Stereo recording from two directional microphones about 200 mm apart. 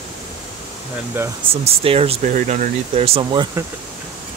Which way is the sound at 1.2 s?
10° right (ahead or behind).